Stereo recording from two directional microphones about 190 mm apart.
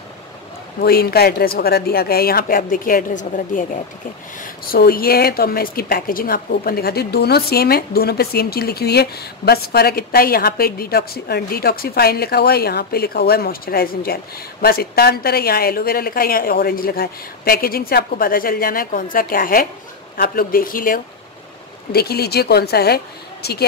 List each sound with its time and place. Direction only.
0.7 s a woman's voice: 55° left (ahead or behind)